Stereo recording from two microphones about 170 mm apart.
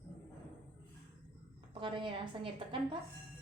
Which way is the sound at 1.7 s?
30° right (ahead or behind).